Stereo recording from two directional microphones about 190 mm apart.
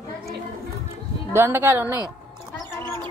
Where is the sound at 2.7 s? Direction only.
15° left (ahead or behind).